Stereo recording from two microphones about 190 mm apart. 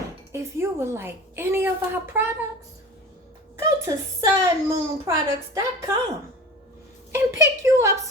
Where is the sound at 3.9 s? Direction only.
15° right (ahead or behind).